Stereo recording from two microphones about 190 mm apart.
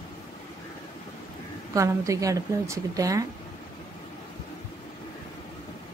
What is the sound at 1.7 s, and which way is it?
A woman's voice, 15° right (ahead or behind).